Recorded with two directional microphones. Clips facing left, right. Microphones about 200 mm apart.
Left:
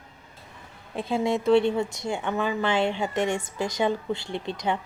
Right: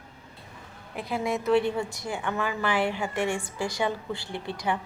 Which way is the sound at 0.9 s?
25° left (ahead or behind).